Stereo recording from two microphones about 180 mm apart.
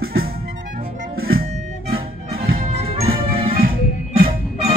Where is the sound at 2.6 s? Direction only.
35° right (ahead or behind).